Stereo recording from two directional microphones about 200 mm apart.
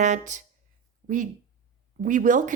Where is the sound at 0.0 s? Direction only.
40° right (ahead or behind).